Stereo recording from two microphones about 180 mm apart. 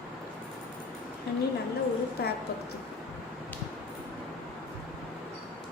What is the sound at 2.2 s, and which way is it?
Speech, 60° left (ahead or behind).